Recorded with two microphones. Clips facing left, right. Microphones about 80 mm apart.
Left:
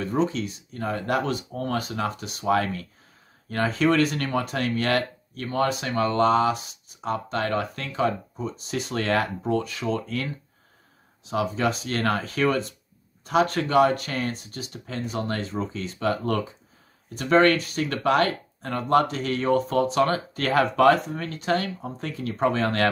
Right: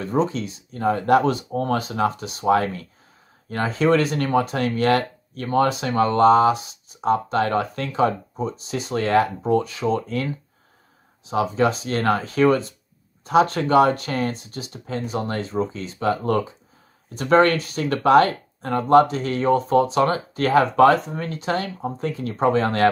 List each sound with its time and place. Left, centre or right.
0.2 s speech: right
11.2 s speech: right